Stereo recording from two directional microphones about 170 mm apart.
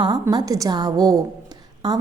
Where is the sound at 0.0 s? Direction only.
25° right (ahead or behind).